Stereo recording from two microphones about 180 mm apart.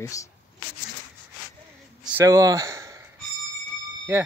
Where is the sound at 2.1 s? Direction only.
15° right (ahead or behind).